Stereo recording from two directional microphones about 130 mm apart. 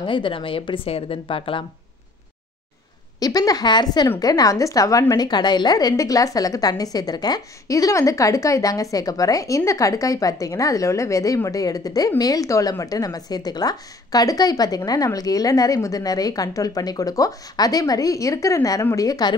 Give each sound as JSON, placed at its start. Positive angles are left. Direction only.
{"t": 0.0, "sound": "a woman's voice", "side_deg": 40}
{"t": 3.2, "sound": "a woman's voice", "side_deg": 30}